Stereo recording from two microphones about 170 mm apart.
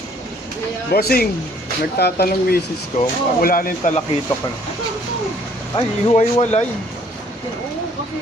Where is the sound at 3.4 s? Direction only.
55° left (ahead or behind).